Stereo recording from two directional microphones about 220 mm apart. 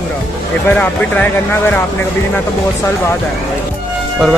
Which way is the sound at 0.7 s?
5° left (ahead or behind).